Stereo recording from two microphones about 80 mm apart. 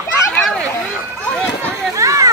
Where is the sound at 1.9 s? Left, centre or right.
Right.